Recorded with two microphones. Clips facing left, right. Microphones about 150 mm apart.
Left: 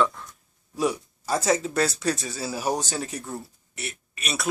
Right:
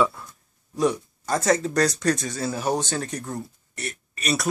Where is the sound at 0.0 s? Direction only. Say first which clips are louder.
Right 1 dB; 5° right (ahead or behind).